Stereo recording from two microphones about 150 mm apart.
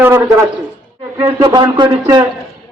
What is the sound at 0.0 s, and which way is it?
Speech, 20° right (ahead or behind).